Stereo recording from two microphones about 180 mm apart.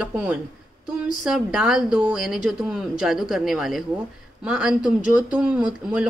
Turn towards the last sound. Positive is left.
turn(degrees=-5)  # may be behind; listen again after turning